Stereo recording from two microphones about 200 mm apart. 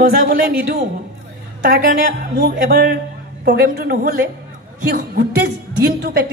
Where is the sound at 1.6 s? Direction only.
45° right (ahead or behind).